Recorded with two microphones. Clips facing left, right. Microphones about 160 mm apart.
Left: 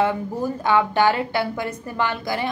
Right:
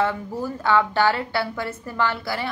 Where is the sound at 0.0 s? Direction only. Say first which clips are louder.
Left 2 dB; 15° left (ahead or behind).